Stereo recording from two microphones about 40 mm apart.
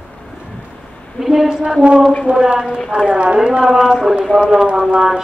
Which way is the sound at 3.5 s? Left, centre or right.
Centre.